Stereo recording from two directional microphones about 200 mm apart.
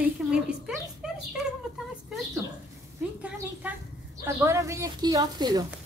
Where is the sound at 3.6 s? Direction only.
5° right (ahead or behind).